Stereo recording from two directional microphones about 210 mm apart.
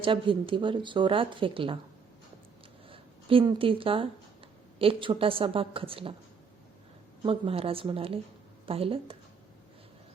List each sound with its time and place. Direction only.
0.0 s speech: 25° right (ahead or behind)
2.9 s speech: 25° right (ahead or behind)
7.2 s speech: 25° right (ahead or behind)